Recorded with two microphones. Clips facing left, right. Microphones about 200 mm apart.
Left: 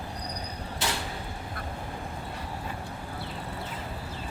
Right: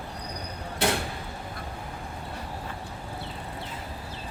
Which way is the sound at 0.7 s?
55° right (ahead or behind).